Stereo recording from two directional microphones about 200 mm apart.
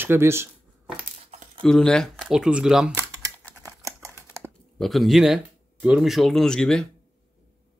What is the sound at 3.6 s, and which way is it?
Typing, 15° right (ahead or behind).